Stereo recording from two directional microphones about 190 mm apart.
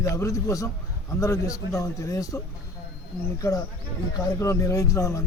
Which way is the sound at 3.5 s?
15° left (ahead or behind).